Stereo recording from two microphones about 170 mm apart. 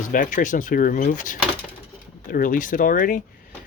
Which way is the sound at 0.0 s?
50° left (ahead or behind).